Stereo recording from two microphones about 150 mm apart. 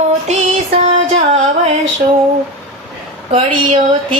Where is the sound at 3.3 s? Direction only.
45° right (ahead or behind).